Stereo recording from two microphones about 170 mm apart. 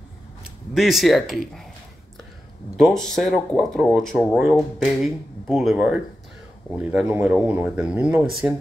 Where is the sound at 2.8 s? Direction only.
Centre (ahead or behind).